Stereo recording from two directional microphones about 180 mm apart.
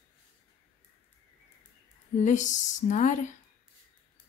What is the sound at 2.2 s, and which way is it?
Speech, 45° left (ahead or behind).